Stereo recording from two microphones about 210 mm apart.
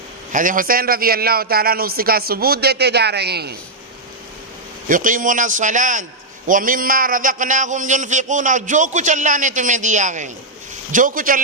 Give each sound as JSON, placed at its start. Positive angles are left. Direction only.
{"t": 0.3, "sound": "a man's voice", "side_deg": -40}
{"t": 4.9, "sound": "a man's voice", "side_deg": -40}